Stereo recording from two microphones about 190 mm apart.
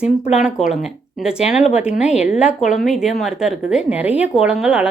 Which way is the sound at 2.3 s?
5° right (ahead or behind).